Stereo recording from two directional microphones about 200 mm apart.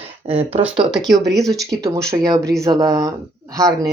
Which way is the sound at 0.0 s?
30° right (ahead or behind).